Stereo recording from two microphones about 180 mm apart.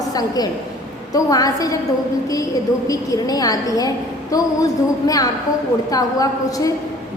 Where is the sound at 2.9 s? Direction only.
20° left (ahead or behind).